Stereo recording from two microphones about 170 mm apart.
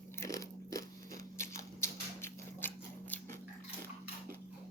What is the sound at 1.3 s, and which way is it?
Scissors, 15° left (ahead or behind).